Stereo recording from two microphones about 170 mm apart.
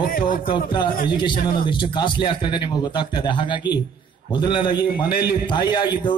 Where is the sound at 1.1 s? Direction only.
30° left (ahead or behind).